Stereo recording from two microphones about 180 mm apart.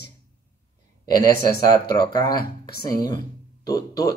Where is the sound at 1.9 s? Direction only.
20° left (ahead or behind).